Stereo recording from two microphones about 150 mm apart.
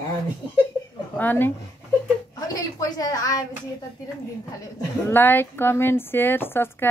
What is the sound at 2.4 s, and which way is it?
A woman's voice, 25° left (ahead or behind).